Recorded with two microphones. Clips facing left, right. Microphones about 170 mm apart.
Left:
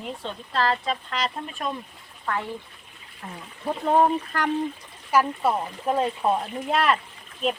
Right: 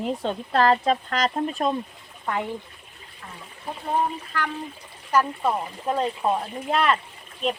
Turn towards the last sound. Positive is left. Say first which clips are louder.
# even
turn(degrees=0)  # may be behind; listen again after turning